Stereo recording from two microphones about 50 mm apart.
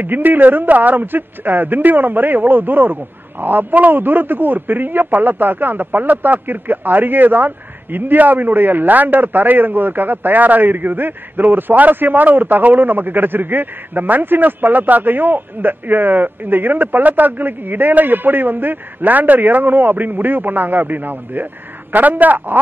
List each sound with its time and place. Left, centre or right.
0.0 s a man's voice: right